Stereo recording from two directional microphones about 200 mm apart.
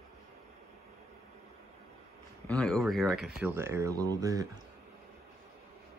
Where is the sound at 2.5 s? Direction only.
5° left (ahead or behind); by 4.4 s 15° right (ahead or behind).